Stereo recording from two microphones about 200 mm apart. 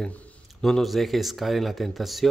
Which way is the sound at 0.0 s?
5° left (ahead or behind).